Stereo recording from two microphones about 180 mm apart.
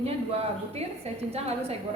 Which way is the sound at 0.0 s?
35° right (ahead or behind).